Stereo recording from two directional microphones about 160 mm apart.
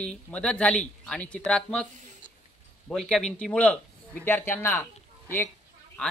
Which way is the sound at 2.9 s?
Centre (ahead or behind).